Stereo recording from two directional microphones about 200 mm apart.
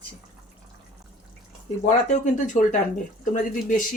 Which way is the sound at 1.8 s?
40° left (ahead or behind).